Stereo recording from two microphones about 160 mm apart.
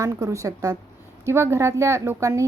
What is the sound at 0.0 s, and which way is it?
A woman's voice, 20° right (ahead or behind).